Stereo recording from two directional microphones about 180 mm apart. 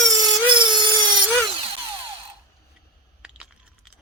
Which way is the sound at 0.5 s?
25° right (ahead or behind).